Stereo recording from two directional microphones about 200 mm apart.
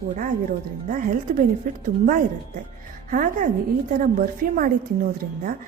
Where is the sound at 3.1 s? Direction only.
40° right (ahead or behind).